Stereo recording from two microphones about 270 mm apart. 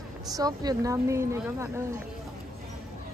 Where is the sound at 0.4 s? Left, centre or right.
Centre.